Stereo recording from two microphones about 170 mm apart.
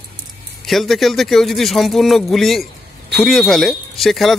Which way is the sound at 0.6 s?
Centre (ahead or behind).